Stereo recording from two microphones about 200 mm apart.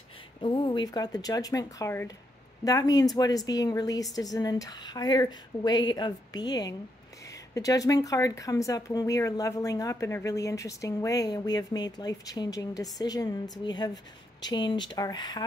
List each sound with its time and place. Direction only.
0.4 s speech: 25° left (ahead or behind)